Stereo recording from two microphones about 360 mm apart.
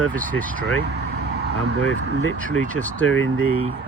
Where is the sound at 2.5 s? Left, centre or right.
Centre.